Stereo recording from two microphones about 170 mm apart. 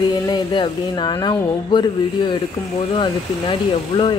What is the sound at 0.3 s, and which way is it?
Speech, 25° left (ahead or behind).